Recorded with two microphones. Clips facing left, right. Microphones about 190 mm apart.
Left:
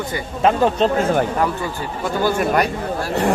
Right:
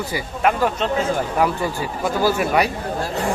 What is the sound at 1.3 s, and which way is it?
Speech, 10° right (ahead or behind).